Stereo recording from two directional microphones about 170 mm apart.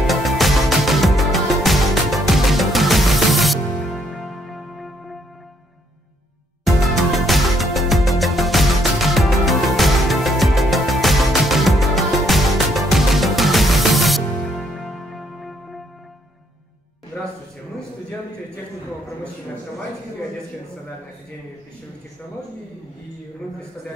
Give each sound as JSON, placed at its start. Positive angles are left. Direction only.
{"t": 0.0, "sound": "music", "side_deg": 0}
{"t": 6.6, "sound": "music", "side_deg": 0}